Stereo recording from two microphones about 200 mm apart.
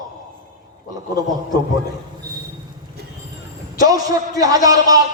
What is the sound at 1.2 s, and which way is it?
Speech, 20° right (ahead or behind).